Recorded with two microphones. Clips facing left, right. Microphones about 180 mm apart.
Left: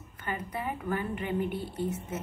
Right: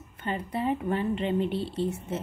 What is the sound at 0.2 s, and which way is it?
A woman's voice, 25° right (ahead or behind).